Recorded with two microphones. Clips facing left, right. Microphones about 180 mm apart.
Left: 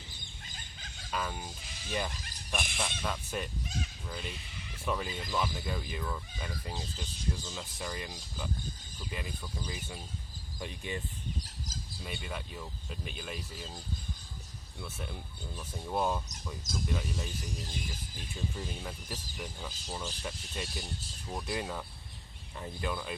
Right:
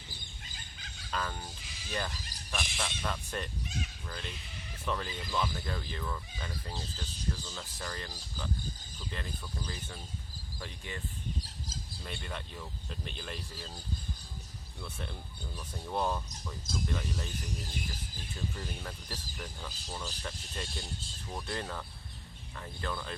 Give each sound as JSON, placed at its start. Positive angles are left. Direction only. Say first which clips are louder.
{"t": 1.1, "sound": "speech", "louder": "left 1 dB", "side_deg": 10}
{"t": 12.0, "sound": "speech", "louder": "left 1 dB", "side_deg": 5}
{"t": 14.8, "sound": "speech", "louder": "left 1 dB", "side_deg": 5}
{"t": 18.3, "sound": "speech", "louder": "left 2 dB", "side_deg": 5}